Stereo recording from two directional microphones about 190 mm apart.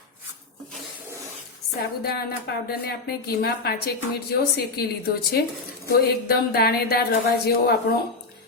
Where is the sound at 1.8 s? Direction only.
55° left (ahead or behind).